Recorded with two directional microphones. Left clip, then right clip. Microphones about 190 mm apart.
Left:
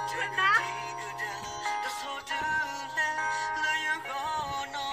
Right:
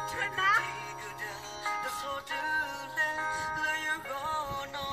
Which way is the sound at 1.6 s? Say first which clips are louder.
Left 1 dB; 30° left (ahead or behind).